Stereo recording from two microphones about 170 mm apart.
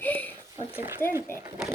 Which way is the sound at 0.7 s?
15° right (ahead or behind).